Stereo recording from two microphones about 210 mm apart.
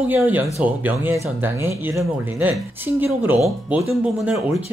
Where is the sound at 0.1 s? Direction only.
10° right (ahead or behind).